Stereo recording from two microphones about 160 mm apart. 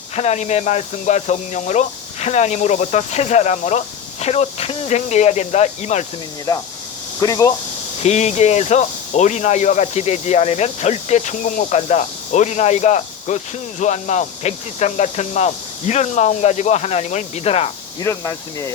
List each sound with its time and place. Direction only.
0.2 s speech: 45° left (ahead or behind)
7.2 s speech: 25° left (ahead or behind)
8.0 s speech: 45° left (ahead or behind)
18.0 s speech: 20° left (ahead or behind)